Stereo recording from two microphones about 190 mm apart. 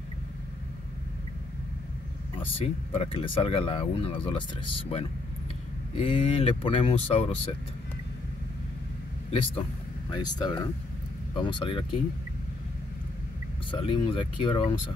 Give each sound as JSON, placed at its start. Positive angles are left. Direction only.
{"t": 2.4, "sound": "speech", "side_deg": 30}
{"t": 9.3, "sound": "speech", "side_deg": 25}
{"t": 13.7, "sound": "speech", "side_deg": 25}